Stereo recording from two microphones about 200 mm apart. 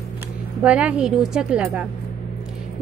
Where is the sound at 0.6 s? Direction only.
5° right (ahead or behind).